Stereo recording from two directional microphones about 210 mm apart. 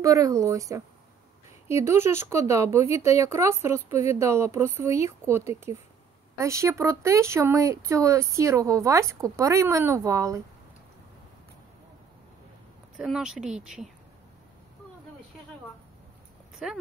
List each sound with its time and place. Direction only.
0.0 s speech: 15° right (ahead or behind)
12.9 s speech: centre (ahead or behind)
16.6 s speech: 5° right (ahead or behind)